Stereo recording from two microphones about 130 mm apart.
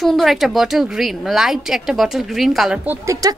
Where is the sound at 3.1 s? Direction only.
25° right (ahead or behind).